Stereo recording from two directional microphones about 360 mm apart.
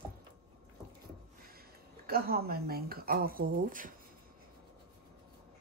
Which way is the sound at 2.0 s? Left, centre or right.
Right.